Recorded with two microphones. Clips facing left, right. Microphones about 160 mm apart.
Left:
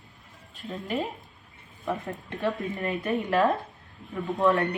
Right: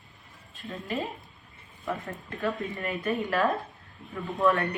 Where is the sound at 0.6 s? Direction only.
20° left (ahead or behind).